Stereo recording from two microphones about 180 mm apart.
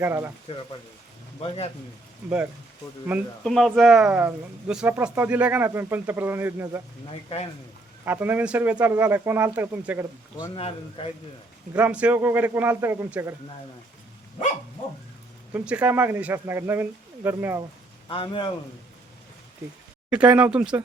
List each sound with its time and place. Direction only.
0.0 s speech: 15° right (ahead or behind)
1.4 s a man's voice: 35° left (ahead or behind)
3.4 s speech: centre (ahead or behind)
8.0 s speech: 10° right (ahead or behind)
10.3 s a man's voice: 20° left (ahead or behind)
10.6 s a man's voice: 30° left (ahead or behind)
11.7 s speech: 10° right (ahead or behind)
15.5 s speech: 10° right (ahead or behind)
18.1 s a man's voice: 30° left (ahead or behind)
20.1 s speech: 5° right (ahead or behind)